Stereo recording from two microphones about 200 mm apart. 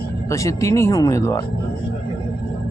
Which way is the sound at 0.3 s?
15° left (ahead or behind).